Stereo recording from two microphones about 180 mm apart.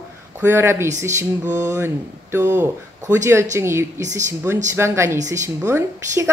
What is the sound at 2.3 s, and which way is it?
A woman's voice, 10° right (ahead or behind).